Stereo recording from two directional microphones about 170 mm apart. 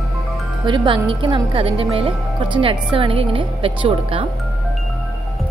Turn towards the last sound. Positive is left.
turn(degrees=-30)  # may be behind; listen again after turning